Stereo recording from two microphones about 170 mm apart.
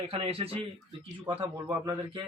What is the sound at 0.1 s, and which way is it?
Speech, 35° right (ahead or behind).